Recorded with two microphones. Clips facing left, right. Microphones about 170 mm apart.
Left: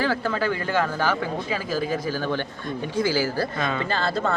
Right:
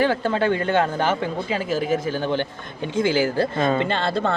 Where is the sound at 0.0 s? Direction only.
25° right (ahead or behind).